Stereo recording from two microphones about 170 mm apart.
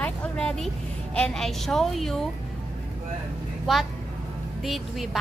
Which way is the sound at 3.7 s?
Centre (ahead or behind).